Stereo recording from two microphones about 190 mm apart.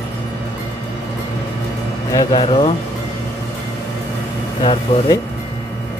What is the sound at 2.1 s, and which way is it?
Speech, 20° left (ahead or behind).